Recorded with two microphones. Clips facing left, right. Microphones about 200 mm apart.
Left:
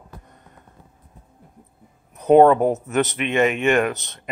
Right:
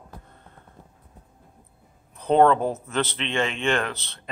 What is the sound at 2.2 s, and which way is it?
Speech, 15° left (ahead or behind).